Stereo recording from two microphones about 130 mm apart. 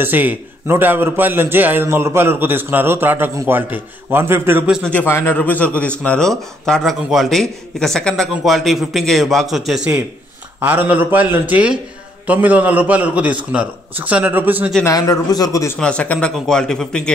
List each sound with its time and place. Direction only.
0.0 s a man's voice: 15° right (ahead or behind)
4.8 s a man's voice: 15° left (ahead or behind); by 14.7 s 15° right (ahead or behind)
14.9 s a man's voice: 25° left (ahead or behind)
15.8 s speech: 10° left (ahead or behind)